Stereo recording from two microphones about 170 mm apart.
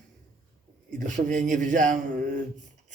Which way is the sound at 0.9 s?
45° right (ahead or behind).